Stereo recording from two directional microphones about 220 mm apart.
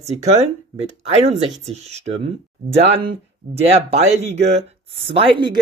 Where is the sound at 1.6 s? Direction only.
30° right (ahead or behind).